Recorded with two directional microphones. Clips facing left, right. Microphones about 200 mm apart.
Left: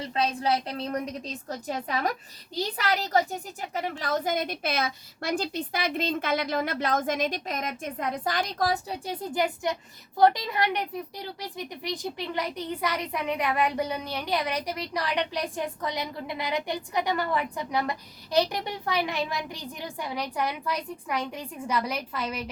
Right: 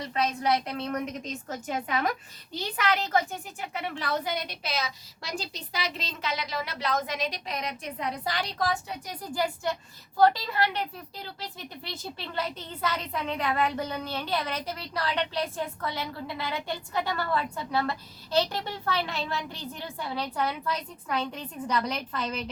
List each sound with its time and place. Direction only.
0.0 s a woman's voice: 30° left (ahead or behind); by 22.4 s 10° left (ahead or behind)